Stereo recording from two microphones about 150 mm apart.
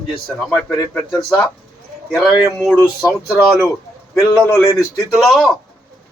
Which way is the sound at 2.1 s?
Centre (ahead or behind).